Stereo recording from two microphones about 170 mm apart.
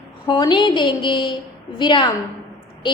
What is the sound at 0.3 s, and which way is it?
A woman's voice, 25° left (ahead or behind).